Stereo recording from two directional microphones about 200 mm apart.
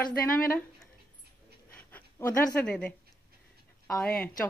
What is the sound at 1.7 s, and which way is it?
A woman's voice, 10° left (ahead or behind).